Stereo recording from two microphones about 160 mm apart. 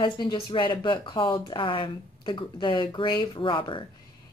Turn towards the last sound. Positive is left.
turn(degrees=30)  # may be behind; listen again after turning